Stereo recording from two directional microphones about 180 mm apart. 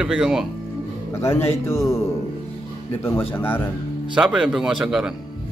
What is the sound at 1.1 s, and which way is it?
Speech, 15° left (ahead or behind).